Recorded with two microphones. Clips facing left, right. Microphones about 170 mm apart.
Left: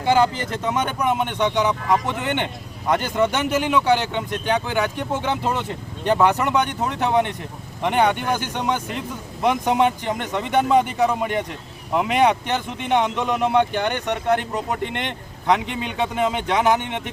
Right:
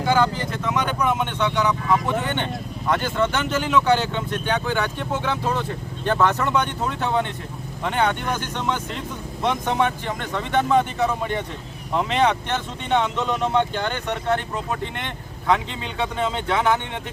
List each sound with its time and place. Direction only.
0.0 s speech: 20° left (ahead or behind)
1.2 s speech: 15° left (ahead or behind)